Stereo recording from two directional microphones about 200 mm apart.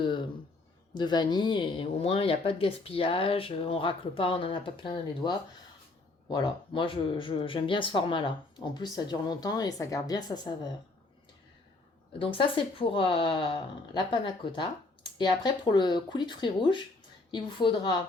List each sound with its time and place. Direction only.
0.0 s speech: 25° left (ahead or behind)
6.3 s speech: 25° left (ahead or behind)
12.2 s speech: 25° left (ahead or behind)